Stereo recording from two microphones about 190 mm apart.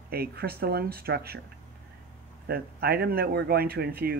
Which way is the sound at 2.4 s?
55° right (ahead or behind).